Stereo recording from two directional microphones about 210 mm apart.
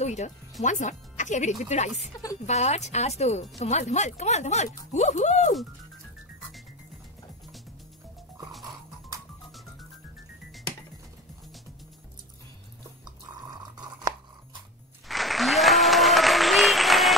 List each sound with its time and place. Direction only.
0.0 s speech: 35° left (ahead or behind)
13.0 s a sound: 20° right (ahead or behind)
15.0 s applause: centre (ahead or behind)